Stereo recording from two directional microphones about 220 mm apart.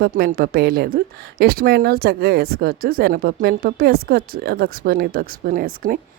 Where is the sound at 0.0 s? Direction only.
40° right (ahead or behind).